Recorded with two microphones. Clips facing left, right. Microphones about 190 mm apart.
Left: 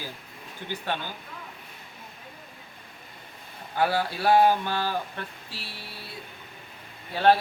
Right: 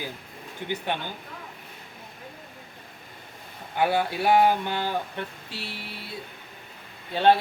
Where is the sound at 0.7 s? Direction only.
20° right (ahead or behind).